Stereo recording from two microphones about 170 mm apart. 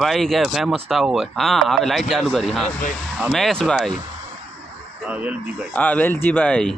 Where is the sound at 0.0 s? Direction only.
Centre (ahead or behind).